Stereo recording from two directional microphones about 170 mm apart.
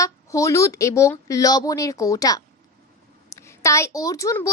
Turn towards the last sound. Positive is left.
turn(degrees=20)  # may be behind; listen again after turning